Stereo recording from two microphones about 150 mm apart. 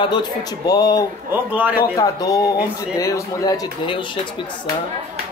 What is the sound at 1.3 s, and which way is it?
Speech, 10° right (ahead or behind).